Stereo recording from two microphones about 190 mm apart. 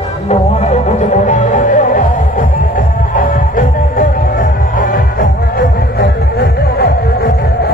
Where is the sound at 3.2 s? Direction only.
45° left (ahead or behind).